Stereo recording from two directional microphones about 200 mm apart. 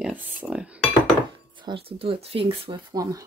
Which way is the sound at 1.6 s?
25° right (ahead or behind).